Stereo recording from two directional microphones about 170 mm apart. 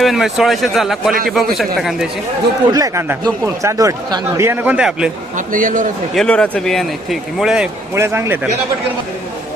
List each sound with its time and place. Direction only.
0.0 s speech: centre (ahead or behind)
2.6 s speech: 20° right (ahead or behind); by 5.1 s 5° right (ahead or behind)
5.5 s a man's voice: 50° right (ahead or behind)
6.1 s speech: 5° left (ahead or behind)
7.9 s speech: 15° right (ahead or behind)